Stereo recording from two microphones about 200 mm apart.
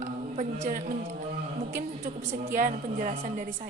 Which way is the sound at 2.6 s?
40° right (ahead or behind).